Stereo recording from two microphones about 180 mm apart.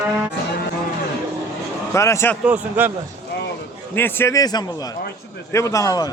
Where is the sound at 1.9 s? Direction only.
15° left (ahead or behind).